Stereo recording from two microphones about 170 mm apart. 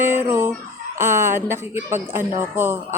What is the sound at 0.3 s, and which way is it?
Fowl, 15° right (ahead or behind).